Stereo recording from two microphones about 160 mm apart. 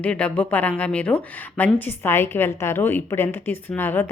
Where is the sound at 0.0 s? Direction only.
5° left (ahead or behind).